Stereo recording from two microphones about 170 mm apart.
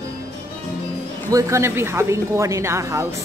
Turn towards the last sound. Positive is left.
turn(degrees=-15)  # may be behind; listen again after turning